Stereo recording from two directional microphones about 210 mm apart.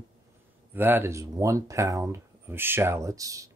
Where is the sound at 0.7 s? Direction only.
10° right (ahead or behind).